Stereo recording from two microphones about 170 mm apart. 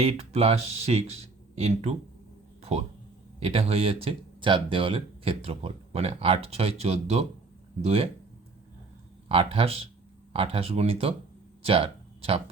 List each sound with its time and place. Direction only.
0.0 s speech: 35° right (ahead or behind)
9.3 s speech: 35° right (ahead or behind)
11.6 s a sound: 35° right (ahead or behind)